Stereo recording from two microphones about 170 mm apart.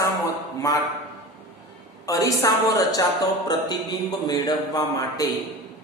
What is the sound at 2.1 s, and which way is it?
A woman's voice, 20° left (ahead or behind).